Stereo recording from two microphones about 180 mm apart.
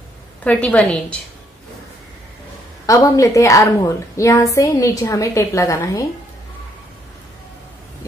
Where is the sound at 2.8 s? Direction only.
20° left (ahead or behind).